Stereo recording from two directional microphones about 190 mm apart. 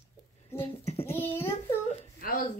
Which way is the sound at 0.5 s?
30° left (ahead or behind).